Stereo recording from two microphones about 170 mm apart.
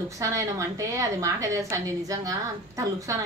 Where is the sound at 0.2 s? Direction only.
20° right (ahead or behind).